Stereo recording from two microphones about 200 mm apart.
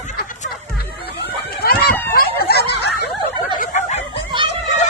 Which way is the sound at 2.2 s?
50° left (ahead or behind).